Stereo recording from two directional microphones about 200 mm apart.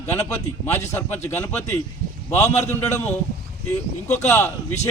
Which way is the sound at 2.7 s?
10° left (ahead or behind).